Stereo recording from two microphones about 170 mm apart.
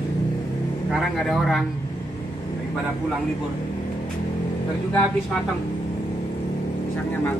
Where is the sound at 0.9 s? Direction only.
Centre (ahead or behind).